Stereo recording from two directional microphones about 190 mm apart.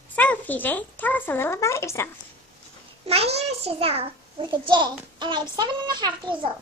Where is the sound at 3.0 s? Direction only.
30° right (ahead or behind).